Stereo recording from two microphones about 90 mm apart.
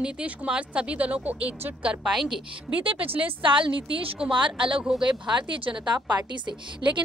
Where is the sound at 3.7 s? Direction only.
70° right (ahead or behind).